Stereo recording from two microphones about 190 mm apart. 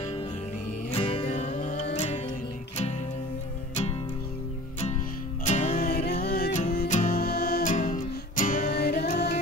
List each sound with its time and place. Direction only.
0.9 s music: 30° left (ahead or behind)
5.4 s music: 40° left (ahead or behind)
7.7 s music: 40° left (ahead or behind)
8.7 s music: 55° left (ahead or behind)